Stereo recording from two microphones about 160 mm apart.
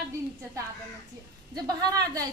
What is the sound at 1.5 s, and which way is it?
Speech, 25° right (ahead or behind).